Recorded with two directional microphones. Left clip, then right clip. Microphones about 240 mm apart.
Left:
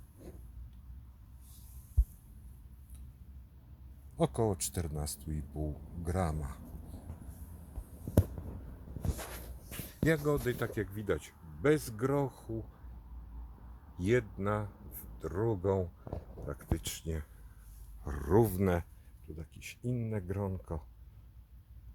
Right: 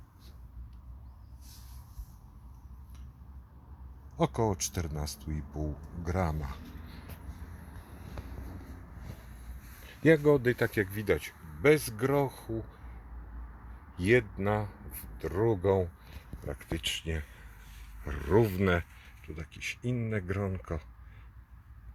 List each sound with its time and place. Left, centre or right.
4.2 s speech: centre
10.1 s speech: right
10.9 s speech: centre
13.9 s speech: centre
18.1 s speech: centre